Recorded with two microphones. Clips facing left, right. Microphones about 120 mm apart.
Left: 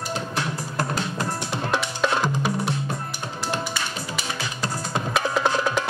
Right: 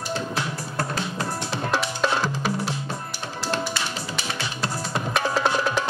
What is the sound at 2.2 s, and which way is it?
Music, 15° left (ahead or behind).